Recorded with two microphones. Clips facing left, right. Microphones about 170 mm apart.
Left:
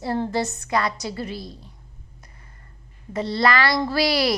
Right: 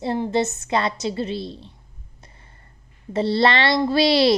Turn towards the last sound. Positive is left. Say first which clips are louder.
# right 5 dB
turn(degrees=-25)  # may be behind; listen again after turning